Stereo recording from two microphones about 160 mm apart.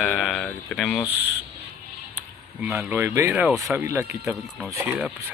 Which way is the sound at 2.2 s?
10° right (ahead or behind).